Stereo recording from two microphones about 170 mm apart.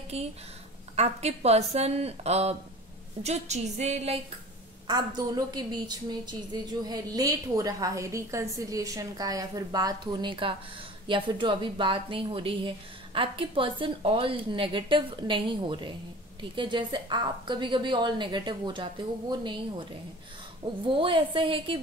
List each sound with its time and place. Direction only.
0.1 s a woman's voice: 35° right (ahead or behind)
4.8 s a woman's voice: 25° right (ahead or behind)